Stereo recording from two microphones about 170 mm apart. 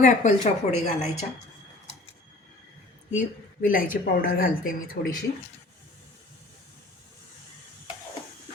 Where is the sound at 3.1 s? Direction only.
50° left (ahead or behind).